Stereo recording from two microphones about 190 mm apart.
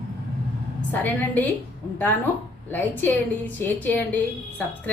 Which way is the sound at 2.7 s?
10° left (ahead or behind).